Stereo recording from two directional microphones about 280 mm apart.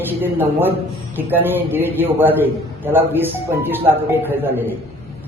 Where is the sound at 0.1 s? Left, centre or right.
Centre.